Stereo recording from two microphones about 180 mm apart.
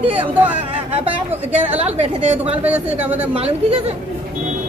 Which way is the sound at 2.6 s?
5° right (ahead or behind).